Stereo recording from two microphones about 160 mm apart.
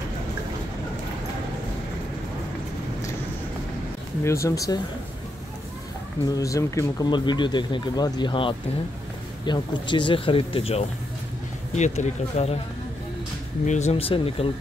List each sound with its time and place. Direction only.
4.2 s speech: 20° left (ahead or behind)
6.2 s speech: 20° left (ahead or behind); by 12.5 s 40° left (ahead or behind)
13.7 s speech: 45° left (ahead or behind)